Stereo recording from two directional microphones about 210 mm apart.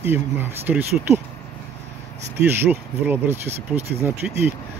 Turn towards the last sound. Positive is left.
turn(degrees=-10)  # may be behind; listen again after turning